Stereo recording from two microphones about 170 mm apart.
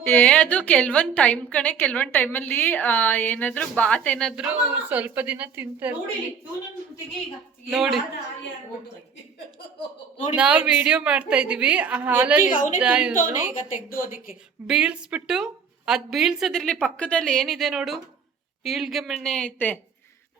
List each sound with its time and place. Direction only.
0.0 s a woman's voice: 10° left (ahead or behind); by 6.0 s 10° right (ahead or behind)
7.7 s a woman's voice: centre (ahead or behind)
10.3 s a woman's voice: 5° right (ahead or behind)
12.4 s a woman's voice: 50° left (ahead or behind)
12.8 s a woman's voice: 5° right (ahead or behind)
13.7 s a woman's voice: 55° left (ahead or behind)
14.7 s a woman's voice: 5° right (ahead or behind); by 19.8 s 10° left (ahead or behind)